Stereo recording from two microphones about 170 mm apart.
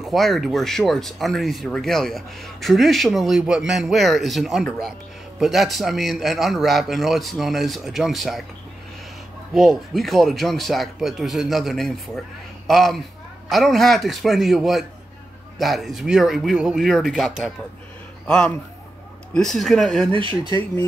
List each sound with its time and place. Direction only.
0.0 s speech: centre (ahead or behind)
9.5 s a man's voice: centre (ahead or behind)
20.1 s speech: 30° right (ahead or behind)